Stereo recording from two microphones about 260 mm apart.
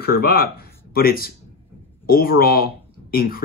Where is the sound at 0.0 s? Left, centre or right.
Left.